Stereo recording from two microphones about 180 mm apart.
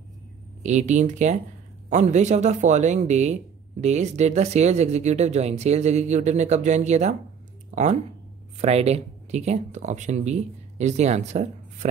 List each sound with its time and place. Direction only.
0.6 s speech: 40° right (ahead or behind)